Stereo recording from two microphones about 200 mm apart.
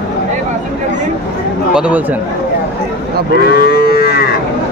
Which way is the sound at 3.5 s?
50° left (ahead or behind).